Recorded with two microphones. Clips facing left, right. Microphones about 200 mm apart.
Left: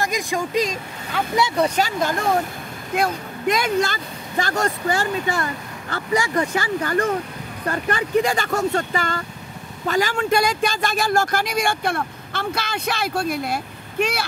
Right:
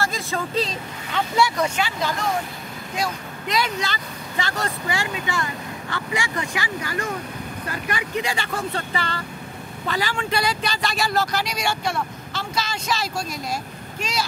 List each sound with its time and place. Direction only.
0.0 s speech: 15° left (ahead or behind)
1.6 s speech: 45° left (ahead or behind); by 14.2 s 60° left (ahead or behind)